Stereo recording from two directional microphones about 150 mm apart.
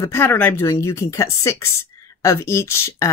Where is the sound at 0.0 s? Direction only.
15° left (ahead or behind).